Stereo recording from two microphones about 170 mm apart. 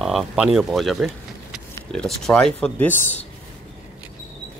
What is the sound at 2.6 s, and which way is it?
Speech, 10° left (ahead or behind).